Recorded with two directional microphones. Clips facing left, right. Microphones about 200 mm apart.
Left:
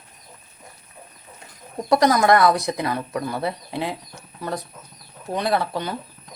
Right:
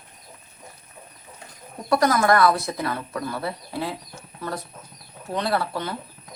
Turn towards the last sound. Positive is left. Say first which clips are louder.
# left 2 dB
turn(degrees=15)  # may be behind; listen again after turning